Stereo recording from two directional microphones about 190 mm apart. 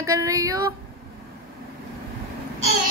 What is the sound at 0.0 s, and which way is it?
Female singing, 15° right (ahead or behind).